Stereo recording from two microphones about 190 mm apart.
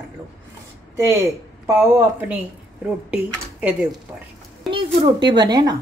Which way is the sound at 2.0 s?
5° right (ahead or behind).